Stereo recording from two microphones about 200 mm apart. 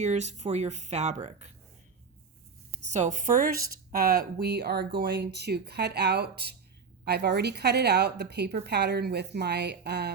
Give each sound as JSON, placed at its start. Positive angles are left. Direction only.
{"t": 0.0, "sound": "speech", "side_deg": -35}
{"t": 2.9, "sound": "a woman's voice", "side_deg": -35}